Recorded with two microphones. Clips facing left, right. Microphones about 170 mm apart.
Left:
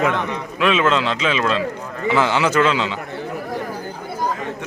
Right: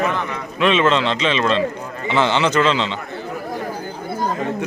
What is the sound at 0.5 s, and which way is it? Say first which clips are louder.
A man's voice: right 1 dB; 5° left (ahead or behind).